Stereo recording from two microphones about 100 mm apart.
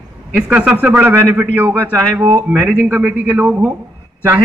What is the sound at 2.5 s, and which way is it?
A man's voice, 10° right (ahead or behind).